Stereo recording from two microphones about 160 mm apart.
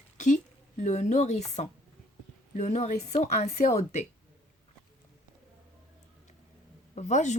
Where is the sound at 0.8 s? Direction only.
45° left (ahead or behind).